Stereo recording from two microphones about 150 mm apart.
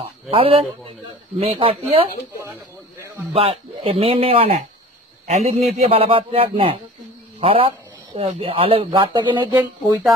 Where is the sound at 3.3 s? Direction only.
40° right (ahead or behind).